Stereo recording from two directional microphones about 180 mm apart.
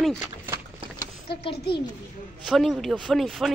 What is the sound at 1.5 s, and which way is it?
Speech, 65° left (ahead or behind).